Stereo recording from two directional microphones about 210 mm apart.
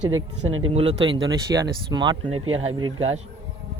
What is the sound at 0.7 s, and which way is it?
Speech, 30° right (ahead or behind).